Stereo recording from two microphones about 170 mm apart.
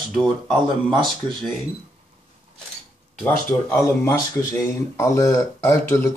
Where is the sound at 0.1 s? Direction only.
Centre (ahead or behind).